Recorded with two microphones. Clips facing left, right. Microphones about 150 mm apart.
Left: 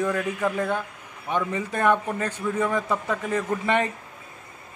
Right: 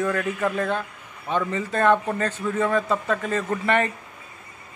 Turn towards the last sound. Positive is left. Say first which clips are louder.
# right 1 dB
turn(degrees=15)  # may be behind; listen again after turning